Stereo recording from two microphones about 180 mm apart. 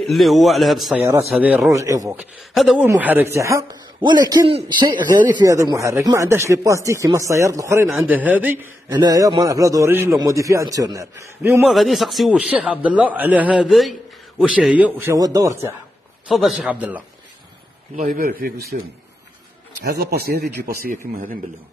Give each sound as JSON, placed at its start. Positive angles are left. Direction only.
{"t": 0.0, "sound": "a man's voice", "side_deg": 0}
{"t": 2.1, "sound": "a man's voice", "side_deg": 0}
{"t": 8.9, "sound": "a man's voice", "side_deg": -20}
{"t": 11.7, "sound": "speech", "side_deg": 0}
{"t": 16.3, "sound": "a man's voice", "side_deg": 0}
{"t": 17.9, "sound": "a man's voice", "side_deg": -50}
{"t": 19.8, "sound": "speech", "side_deg": -65}